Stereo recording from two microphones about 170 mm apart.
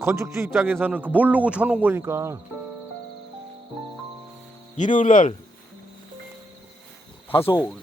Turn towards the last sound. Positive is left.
turn(degrees=15)  # may be behind; listen again after turning